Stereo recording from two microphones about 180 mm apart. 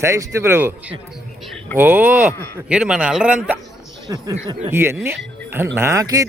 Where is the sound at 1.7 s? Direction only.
10° right (ahead or behind).